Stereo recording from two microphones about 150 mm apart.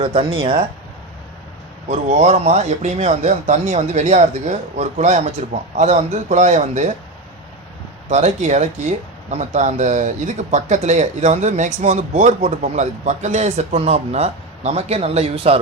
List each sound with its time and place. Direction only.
0.0 s speech: 40° right (ahead or behind)
1.9 s speech: 50° right (ahead or behind)
8.1 s speech: 50° right (ahead or behind)